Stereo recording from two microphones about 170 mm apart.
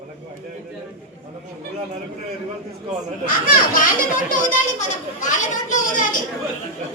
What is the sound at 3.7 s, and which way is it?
A child's voice, 50° left (ahead or behind).